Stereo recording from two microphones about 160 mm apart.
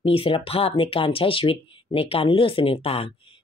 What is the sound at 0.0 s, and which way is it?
Speech, 35° left (ahead or behind).